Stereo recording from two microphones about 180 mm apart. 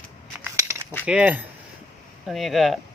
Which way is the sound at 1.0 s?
5° right (ahead or behind).